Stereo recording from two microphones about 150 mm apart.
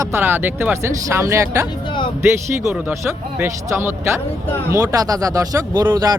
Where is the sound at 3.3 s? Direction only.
15° right (ahead or behind).